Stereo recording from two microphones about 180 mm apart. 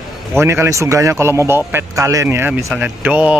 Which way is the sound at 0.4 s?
15° right (ahead or behind).